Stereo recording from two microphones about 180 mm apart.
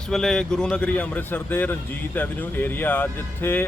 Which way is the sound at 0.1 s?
5° left (ahead or behind).